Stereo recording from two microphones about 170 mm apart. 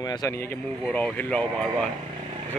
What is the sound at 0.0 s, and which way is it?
Speech, 20° left (ahead or behind).